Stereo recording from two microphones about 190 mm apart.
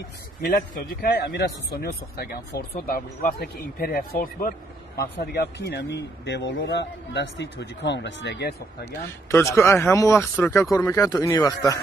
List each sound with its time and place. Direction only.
1.0 s speech: 55° left (ahead or behind)
5.2 s a man's voice: 60° left (ahead or behind)
9.3 s speech: 15° left (ahead or behind)